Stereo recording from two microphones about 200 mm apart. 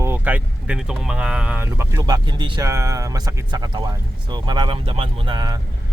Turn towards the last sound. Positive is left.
turn(degrees=-20)  # may be behind; listen again after turning